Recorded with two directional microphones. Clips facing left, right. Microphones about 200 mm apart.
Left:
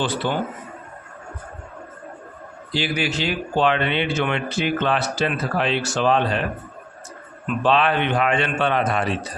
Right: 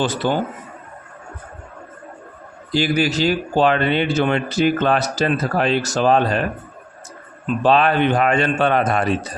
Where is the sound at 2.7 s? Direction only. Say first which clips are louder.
Right 6 dB; 45° right (ahead or behind).